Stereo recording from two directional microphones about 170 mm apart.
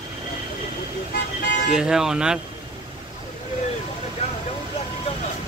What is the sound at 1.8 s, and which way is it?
Speech, 5° right (ahead or behind).